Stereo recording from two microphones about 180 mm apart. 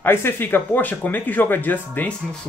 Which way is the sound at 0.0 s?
10° left (ahead or behind).